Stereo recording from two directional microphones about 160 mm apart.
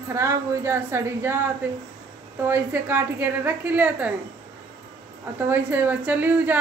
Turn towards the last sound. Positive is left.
turn(degrees=-10)  # may be behind; listen again after turning